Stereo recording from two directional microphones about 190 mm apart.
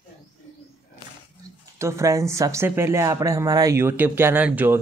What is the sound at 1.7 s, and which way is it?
Speech, 15° right (ahead or behind).